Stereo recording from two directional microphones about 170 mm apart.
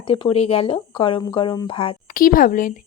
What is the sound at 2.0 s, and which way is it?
Speech, 55° left (ahead or behind).